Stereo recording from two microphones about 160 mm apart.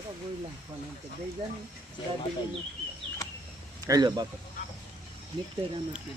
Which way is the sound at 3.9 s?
25° right (ahead or behind).